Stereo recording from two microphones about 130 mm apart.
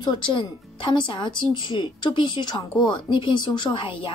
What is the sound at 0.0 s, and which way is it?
Speech, 35° left (ahead or behind).